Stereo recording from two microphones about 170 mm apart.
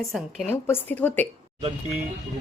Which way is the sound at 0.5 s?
10° left (ahead or behind).